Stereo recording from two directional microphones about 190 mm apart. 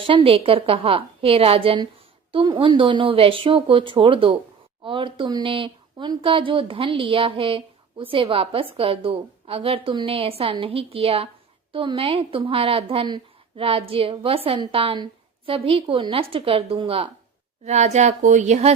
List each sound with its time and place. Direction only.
0.0 s a woman's voice: 30° right (ahead or behind)